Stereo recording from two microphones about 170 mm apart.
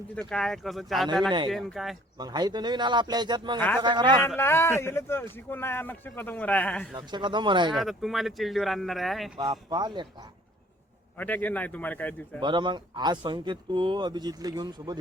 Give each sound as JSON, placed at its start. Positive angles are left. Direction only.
{"t": 0.3, "sound": "speech", "side_deg": 0}
{"t": 2.1, "sound": "a man's voice", "side_deg": -25}
{"t": 4.4, "sound": "speech", "side_deg": 15}
{"t": 6.9, "sound": "a man's voice", "side_deg": -25}
{"t": 7.7, "sound": "speech", "side_deg": 0}
{"t": 9.4, "sound": "a man's voice", "side_deg": -25}
{"t": 11.2, "sound": "speech", "side_deg": 10}
{"t": 12.4, "sound": "a man's voice", "side_deg": -25}